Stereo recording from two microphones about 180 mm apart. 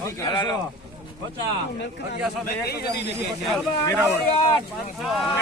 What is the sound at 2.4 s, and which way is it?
Speech, 60° left (ahead or behind).